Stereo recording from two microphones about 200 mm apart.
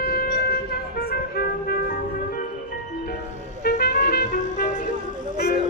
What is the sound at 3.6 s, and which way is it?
Music, 55° left (ahead or behind).